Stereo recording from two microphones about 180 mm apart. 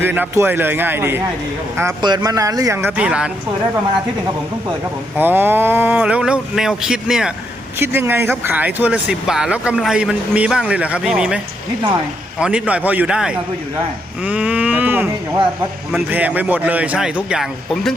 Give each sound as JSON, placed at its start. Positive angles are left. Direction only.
{"t": 0.0, "sound": "speech", "side_deg": -10}
{"t": 5.1, "sound": "a man's voice", "side_deg": -10}
{"t": 12.4, "sound": "speech", "side_deg": -5}
{"t": 14.3, "sound": "cattle", "side_deg": -10}
{"t": 15.9, "sound": "speech", "side_deg": -5}